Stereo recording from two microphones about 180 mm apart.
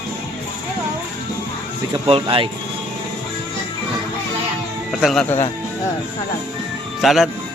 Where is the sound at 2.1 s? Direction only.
30° right (ahead or behind).